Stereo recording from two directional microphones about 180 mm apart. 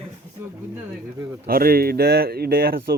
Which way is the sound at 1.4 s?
55° right (ahead or behind).